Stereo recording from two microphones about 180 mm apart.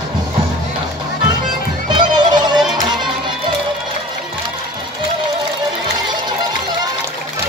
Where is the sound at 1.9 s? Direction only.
25° right (ahead or behind).